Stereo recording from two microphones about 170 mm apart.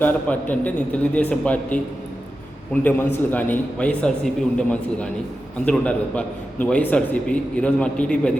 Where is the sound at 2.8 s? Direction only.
10° left (ahead or behind).